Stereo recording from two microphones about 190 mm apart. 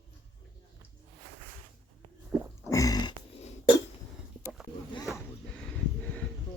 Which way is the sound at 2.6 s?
20° left (ahead or behind).